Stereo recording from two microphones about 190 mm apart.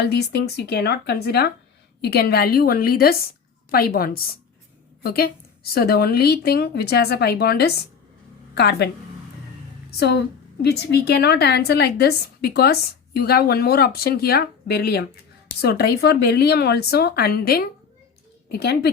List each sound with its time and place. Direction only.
0.0 s a woman's voice: 60° left (ahead or behind)
10.0 s a woman's voice: 60° left (ahead or behind)